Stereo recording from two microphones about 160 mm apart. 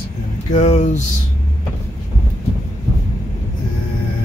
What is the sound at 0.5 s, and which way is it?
Speech, 45° left (ahead or behind).